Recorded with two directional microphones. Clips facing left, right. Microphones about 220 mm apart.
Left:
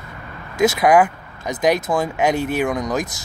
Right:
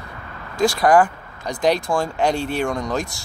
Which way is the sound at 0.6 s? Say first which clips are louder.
Left 1 dB; 20° left (ahead or behind).